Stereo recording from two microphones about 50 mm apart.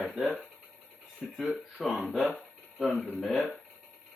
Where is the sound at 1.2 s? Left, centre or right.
Centre.